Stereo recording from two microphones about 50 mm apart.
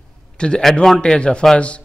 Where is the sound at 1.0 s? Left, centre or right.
Centre.